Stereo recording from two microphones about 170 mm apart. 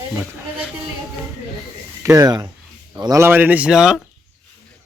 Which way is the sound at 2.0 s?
20° right (ahead or behind).